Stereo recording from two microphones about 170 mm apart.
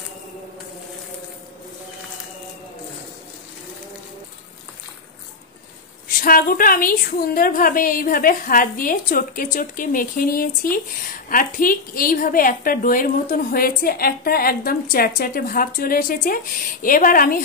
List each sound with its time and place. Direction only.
6.1 s a woman's voice: 55° left (ahead or behind)